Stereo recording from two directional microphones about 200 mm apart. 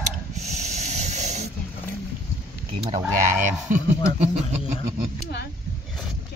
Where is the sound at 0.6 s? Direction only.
35° right (ahead or behind).